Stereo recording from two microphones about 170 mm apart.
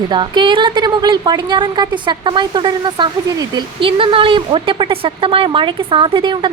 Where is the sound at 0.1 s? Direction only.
25° right (ahead or behind).